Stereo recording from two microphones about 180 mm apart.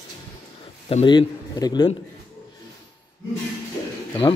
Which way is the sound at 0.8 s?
30° left (ahead or behind).